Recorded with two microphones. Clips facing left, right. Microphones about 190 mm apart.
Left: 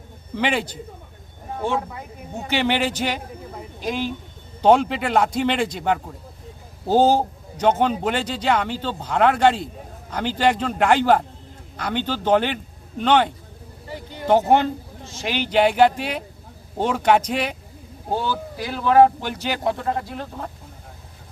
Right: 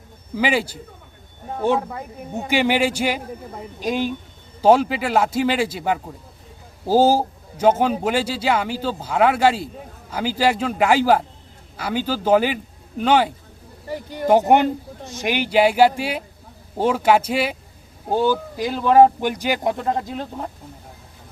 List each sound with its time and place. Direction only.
0.3 s a man's voice: 5° right (ahead or behind)
2.3 s a man's voice: 10° right (ahead or behind)
4.6 s a man's voice: 5° right (ahead or behind)